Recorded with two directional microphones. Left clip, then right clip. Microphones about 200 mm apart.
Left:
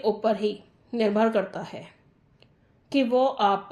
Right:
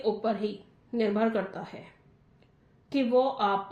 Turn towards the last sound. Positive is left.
turn(degrees=45)  # may be behind; listen again after turning